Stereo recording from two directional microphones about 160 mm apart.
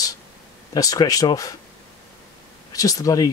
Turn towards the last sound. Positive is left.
turn(degrees=20)  # may be behind; listen again after turning